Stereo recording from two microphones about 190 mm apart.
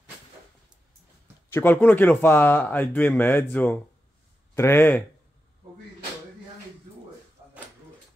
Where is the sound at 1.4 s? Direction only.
10° left (ahead or behind).